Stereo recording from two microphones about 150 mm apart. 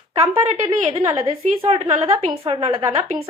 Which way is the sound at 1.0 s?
40° right (ahead or behind).